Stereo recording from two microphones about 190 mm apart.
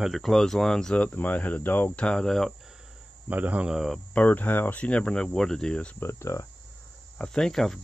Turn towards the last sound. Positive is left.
turn(degrees=5)  # may be behind; listen again after turning